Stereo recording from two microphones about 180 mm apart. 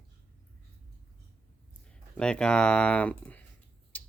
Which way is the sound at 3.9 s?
10° left (ahead or behind).